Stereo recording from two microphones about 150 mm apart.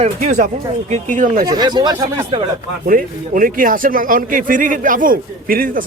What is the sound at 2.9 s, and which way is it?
Speech, 65° right (ahead or behind).